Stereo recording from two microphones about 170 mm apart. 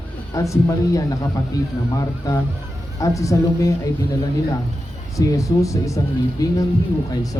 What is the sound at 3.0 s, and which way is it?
Speech, 20° left (ahead or behind).